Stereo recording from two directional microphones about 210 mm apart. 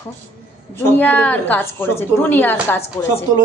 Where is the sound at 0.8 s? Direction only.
10° left (ahead or behind).